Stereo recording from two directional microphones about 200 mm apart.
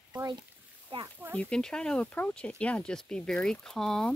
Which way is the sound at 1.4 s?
5° left (ahead or behind).